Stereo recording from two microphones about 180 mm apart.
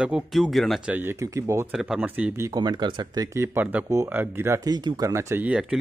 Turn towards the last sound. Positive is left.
turn(degrees=-5)  # may be behind; listen again after turning